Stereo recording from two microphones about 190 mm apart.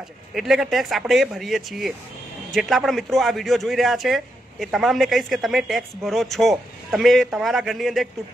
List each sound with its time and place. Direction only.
0.3 s speech: centre (ahead or behind)